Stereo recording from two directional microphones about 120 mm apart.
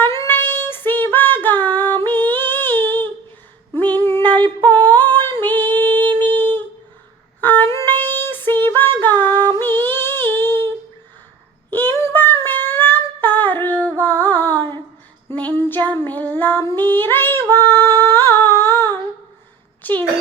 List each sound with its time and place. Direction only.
0.0 s female singing: 20° left (ahead or behind)
6.1 s humming: 15° left (ahead or behind)
7.4 s music: 15° left (ahead or behind)
8.6 s female singing: 20° left (ahead or behind)
9.6 s a sound: 15° left (ahead or behind)
11.7 s a sound: 15° left (ahead or behind)
14.0 s music: 15° left (ahead or behind)
15.3 s child singing: 15° left (ahead or behind)
19.8 s a sound: 15° left (ahead or behind)